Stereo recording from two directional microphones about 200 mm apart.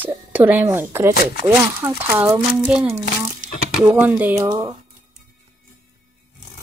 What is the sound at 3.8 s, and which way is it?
Speech, 10° right (ahead or behind).